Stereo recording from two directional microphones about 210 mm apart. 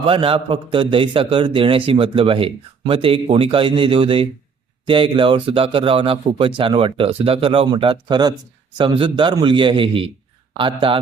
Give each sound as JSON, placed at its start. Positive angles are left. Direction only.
{"t": 0.0, "sound": "a man's voice", "side_deg": -25}